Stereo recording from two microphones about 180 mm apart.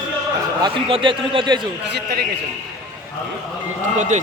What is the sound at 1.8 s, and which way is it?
Speech, 65° right (ahead or behind).